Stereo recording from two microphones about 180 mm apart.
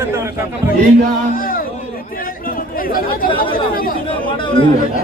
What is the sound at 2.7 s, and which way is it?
Speech, 50° left (ahead or behind).